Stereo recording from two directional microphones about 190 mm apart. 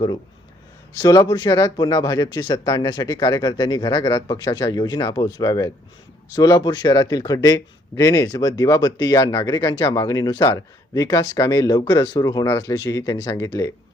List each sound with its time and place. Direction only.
0.9 s speech: 20° left (ahead or behind)